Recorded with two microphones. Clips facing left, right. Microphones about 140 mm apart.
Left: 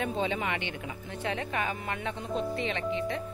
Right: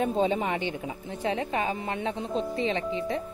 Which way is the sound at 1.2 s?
25° right (ahead or behind).